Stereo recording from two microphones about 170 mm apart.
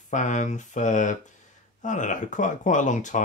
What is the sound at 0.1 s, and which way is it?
Speech, 45° left (ahead or behind).